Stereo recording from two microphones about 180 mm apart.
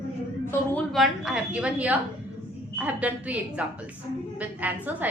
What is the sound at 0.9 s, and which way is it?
A woman's voice, centre (ahead or behind).